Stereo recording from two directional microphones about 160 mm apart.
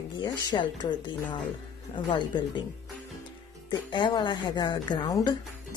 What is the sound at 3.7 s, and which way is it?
A woman's voice, 30° left (ahead or behind).